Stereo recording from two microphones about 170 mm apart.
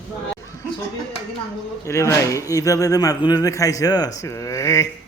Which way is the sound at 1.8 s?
15° left (ahead or behind).